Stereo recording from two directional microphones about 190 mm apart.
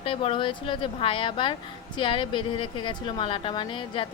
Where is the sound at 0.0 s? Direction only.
30° left (ahead or behind).